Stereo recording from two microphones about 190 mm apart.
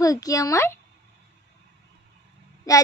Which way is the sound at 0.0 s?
20° left (ahead or behind).